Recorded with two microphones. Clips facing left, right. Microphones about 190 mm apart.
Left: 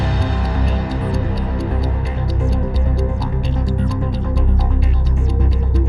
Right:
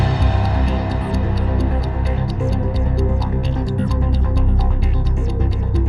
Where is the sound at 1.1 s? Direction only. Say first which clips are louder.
Right 1 dB; centre (ahead or behind).